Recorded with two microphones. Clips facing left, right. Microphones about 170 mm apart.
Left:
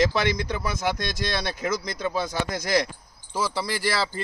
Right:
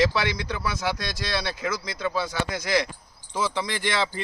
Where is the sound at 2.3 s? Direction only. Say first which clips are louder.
Left 1 dB; 45° left (ahead or behind).